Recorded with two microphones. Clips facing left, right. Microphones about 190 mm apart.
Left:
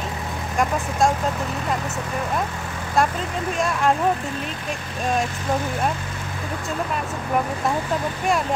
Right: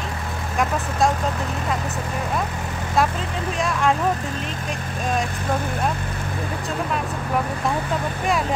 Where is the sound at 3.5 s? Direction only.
Centre (ahead or behind).